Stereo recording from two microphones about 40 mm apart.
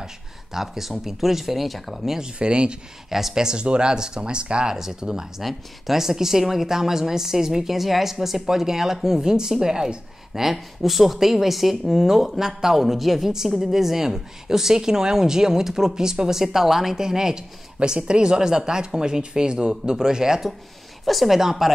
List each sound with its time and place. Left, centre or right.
0.0 s speech: centre
2.0 s speech: centre
3.1 s speech: centre
3.4 s speech: right
21.0 s speech: centre